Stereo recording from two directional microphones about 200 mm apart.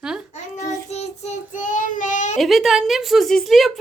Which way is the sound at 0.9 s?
35° left (ahead or behind).